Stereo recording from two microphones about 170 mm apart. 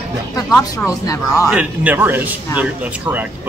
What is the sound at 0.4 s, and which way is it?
Speech, 20° left (ahead or behind).